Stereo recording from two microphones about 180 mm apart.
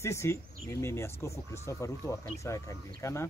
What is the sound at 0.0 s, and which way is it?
Speech, 15° left (ahead or behind).